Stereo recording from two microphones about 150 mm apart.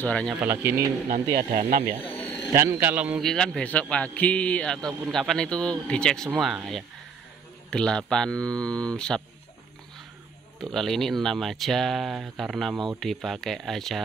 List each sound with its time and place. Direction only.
0.0 s a man's voice: 5° left (ahead or behind)
0.4 s speech: 15° right (ahead or behind)
1.0 s speech: 60° right (ahead or behind)
2.1 s a sound: 10° left (ahead or behind)
2.6 s speech: 15° right (ahead or behind)
3.2 s a man's voice: 5° left (ahead or behind)
10.6 s speech: centre (ahead or behind)